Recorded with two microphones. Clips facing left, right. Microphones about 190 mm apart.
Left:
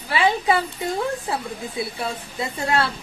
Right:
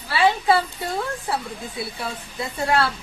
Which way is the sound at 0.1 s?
15° left (ahead or behind).